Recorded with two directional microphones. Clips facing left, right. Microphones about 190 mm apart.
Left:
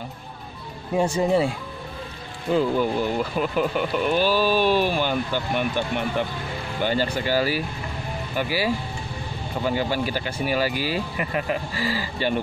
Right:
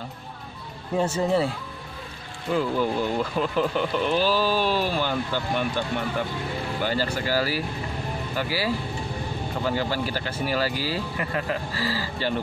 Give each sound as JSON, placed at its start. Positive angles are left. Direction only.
{"t": 0.9, "sound": "speech", "side_deg": 10}
{"t": 2.5, "sound": "speech", "side_deg": 15}